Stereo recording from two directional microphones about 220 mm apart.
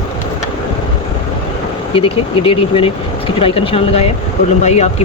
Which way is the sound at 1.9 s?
25° left (ahead or behind).